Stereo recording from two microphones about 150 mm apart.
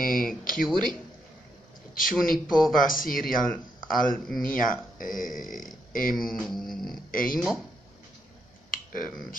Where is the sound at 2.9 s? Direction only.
70° left (ahead or behind).